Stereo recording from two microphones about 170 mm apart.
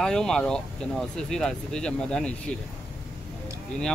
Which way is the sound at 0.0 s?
5° left (ahead or behind).